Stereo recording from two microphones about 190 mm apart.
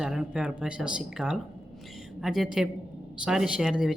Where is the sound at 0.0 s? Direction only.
Centre (ahead or behind).